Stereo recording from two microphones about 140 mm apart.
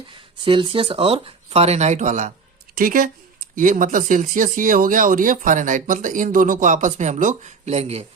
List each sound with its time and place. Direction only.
0.1 s speech: 35° right (ahead or behind); by 2.3 s 60° right (ahead or behind)
2.7 s speech: 85° right
3.5 s speech: 70° right (ahead or behind); by 8.0 s 50° right (ahead or behind)